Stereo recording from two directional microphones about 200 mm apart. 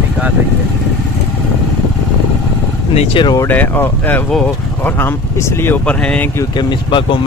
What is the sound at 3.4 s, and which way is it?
Speech, 10° left (ahead or behind).